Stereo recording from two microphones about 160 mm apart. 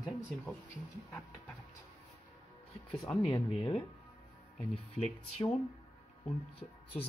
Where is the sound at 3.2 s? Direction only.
30° left (ahead or behind).